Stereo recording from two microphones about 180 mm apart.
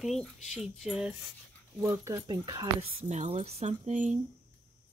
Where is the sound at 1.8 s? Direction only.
15° right (ahead or behind); by 4.1 s 40° right (ahead or behind).